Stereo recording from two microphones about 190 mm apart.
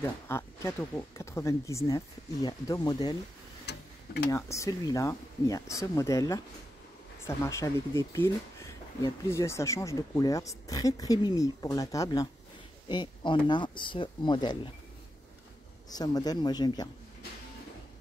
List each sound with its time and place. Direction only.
0.0 s speech: 15° left (ahead or behind)
3.7 s tick-tock: 65° left (ahead or behind)
4.3 s speech: 15° left (ahead or behind)
15.9 s speech: 20° left (ahead or behind)